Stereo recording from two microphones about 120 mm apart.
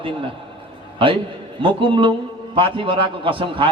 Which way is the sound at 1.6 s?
45° right (ahead or behind).